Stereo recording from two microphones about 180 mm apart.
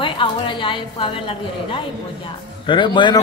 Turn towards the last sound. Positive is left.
turn(degrees=25)  # may be behind; listen again after turning